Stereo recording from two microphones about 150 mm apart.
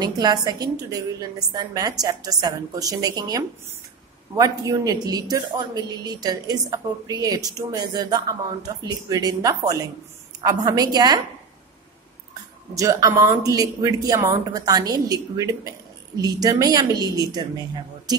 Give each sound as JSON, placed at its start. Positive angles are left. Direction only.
{"t": 0.0, "sound": "speech", "side_deg": -25}
{"t": 12.7, "sound": "speech", "side_deg": -20}